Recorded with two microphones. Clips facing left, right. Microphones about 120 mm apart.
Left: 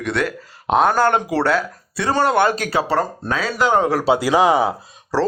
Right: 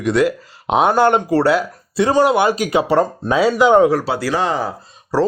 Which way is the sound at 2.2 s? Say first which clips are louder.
Right 2 dB; 10° right (ahead or behind).